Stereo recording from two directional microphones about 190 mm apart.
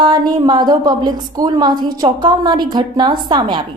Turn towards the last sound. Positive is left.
turn(degrees=-25)  # may be behind; listen again after turning